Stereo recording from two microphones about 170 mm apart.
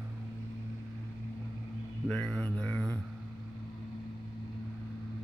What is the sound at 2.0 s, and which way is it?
Speech, 5° left (ahead or behind).